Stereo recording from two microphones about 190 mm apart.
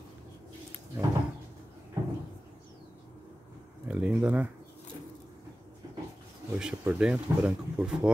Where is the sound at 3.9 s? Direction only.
5° right (ahead or behind).